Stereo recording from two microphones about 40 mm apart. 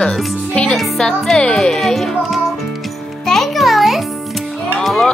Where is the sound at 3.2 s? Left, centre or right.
Centre.